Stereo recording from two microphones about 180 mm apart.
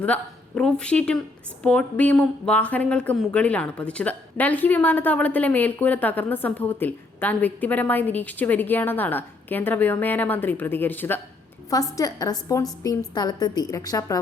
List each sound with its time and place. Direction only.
0.0 s a woman's voice: 10° left (ahead or behind)